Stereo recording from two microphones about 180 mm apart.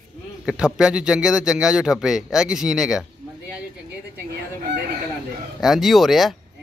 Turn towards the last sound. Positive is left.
turn(degrees=0)  # may be behind; listen again after turning